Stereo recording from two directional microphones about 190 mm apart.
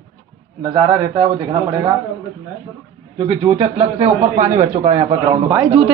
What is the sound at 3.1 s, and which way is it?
A man's voice, 30° right (ahead or behind).